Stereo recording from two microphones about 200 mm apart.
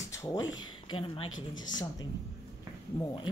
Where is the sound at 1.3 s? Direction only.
70° left (ahead or behind).